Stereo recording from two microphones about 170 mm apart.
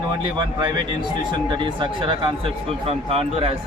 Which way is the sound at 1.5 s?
30° right (ahead or behind).